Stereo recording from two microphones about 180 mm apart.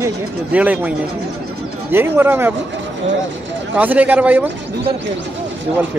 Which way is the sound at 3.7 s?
10° right (ahead or behind).